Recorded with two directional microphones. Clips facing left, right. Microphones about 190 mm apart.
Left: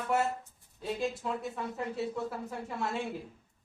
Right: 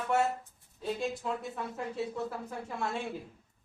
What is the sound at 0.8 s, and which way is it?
Speech, centre (ahead or behind).